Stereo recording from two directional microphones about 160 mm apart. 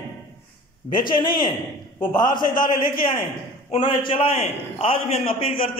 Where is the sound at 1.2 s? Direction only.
25° left (ahead or behind).